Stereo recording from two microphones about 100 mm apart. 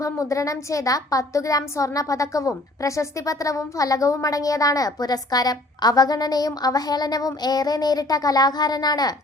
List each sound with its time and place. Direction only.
0.0 s speech: 35° left (ahead or behind)